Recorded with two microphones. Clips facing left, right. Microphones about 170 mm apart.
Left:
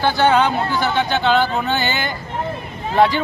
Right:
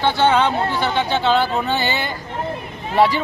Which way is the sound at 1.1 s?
Centre (ahead or behind).